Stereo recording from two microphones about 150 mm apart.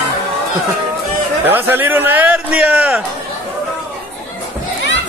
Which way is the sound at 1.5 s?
15° right (ahead or behind).